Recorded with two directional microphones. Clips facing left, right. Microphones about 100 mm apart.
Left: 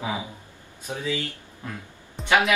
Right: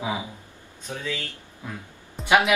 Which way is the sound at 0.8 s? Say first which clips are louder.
Left 3 dB; 15° left (ahead or behind).